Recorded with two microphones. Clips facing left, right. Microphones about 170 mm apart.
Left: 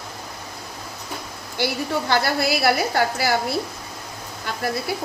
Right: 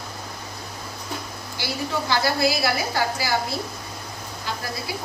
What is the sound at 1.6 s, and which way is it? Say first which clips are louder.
A woman's voice: left 4 dB; 60° left (ahead or behind).